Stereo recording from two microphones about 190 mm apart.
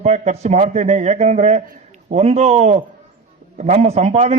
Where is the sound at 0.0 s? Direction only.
35° right (ahead or behind).